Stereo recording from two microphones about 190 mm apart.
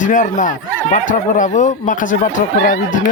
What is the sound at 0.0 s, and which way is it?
Speech, 40° left (ahead or behind).